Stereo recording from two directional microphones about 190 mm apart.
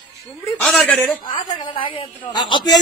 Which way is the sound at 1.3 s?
25° left (ahead or behind).